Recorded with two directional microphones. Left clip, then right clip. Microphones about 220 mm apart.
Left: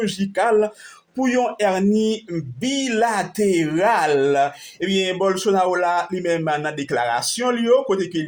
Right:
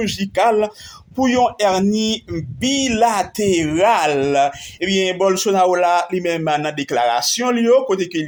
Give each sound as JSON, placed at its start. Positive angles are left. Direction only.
{"t": 0.2, "sound": "speech", "side_deg": -30}